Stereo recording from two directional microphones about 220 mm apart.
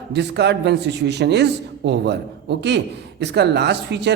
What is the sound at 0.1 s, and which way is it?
A man's voice, 50° right (ahead or behind).